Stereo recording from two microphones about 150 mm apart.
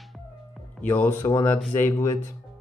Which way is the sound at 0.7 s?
10° left (ahead or behind).